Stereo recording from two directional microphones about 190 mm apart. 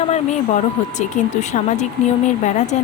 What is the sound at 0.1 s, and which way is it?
Speech, 40° left (ahead or behind).